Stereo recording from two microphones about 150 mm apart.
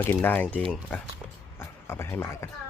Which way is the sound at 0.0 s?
10° left (ahead or behind).